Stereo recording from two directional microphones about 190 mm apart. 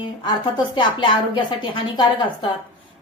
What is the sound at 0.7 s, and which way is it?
Speech, 25° left (ahead or behind).